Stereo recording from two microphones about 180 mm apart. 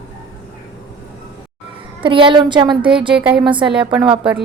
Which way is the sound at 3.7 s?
5° right (ahead or behind).